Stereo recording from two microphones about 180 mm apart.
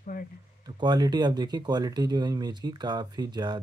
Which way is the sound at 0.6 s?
25° right (ahead or behind).